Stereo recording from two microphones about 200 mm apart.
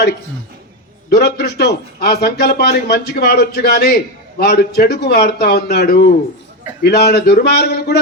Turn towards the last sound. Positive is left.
turn(degrees=55)  # may be behind; listen again after turning